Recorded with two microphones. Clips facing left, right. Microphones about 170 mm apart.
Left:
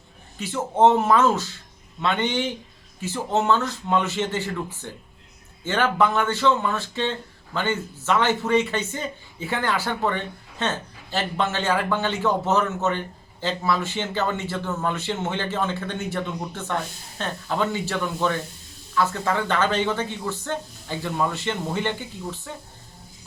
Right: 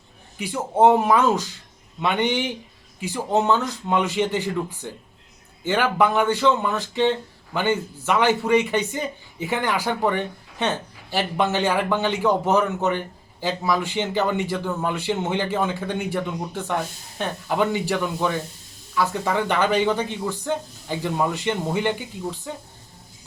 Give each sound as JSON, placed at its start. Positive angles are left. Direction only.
{"t": 0.3, "sound": "speech", "side_deg": -15}